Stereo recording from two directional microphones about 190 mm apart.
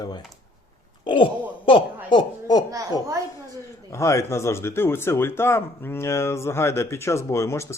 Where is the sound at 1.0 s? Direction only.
25° left (ahead or behind).